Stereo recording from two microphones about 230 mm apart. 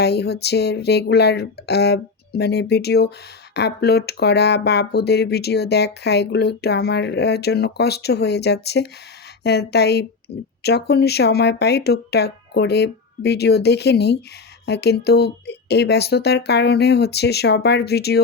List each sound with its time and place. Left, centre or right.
0.0 s speech: left